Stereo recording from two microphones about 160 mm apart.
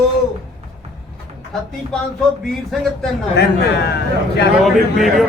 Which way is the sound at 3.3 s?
90° left.